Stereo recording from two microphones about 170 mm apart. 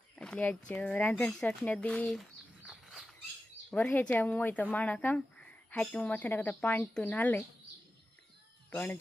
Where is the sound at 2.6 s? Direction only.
Centre (ahead or behind).